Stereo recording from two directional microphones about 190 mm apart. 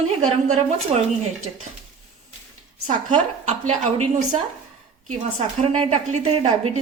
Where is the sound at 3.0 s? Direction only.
35° right (ahead or behind).